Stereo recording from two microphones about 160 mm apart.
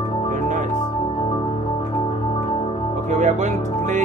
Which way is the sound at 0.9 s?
35° left (ahead or behind).